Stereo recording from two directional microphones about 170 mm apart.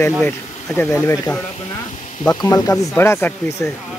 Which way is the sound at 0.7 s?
15° left (ahead or behind).